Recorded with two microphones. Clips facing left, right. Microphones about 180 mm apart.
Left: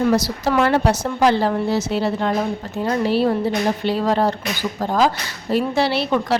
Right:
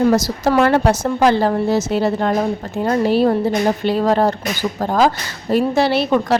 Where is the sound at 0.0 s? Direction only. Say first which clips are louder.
Right 3 dB; 45° right (ahead or behind).